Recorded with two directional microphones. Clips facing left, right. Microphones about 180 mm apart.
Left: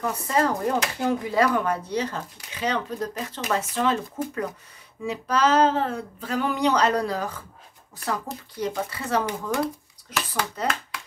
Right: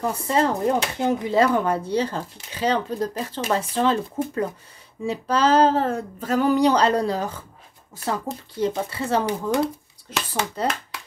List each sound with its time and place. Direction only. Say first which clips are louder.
0.0 s speech: right 2 dB; 30° right (ahead or behind)
5.0 s a sound: right 2 dB; 30° right (ahead or behind)
8.0 s speech: right 3 dB; 25° right (ahead or behind)